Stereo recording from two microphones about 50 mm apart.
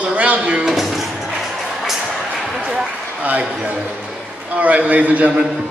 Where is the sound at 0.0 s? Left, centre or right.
Right.